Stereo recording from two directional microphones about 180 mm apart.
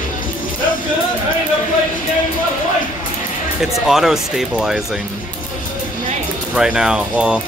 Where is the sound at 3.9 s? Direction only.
Centre (ahead or behind).